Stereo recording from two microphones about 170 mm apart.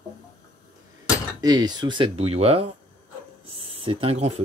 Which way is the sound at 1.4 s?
25° right (ahead or behind).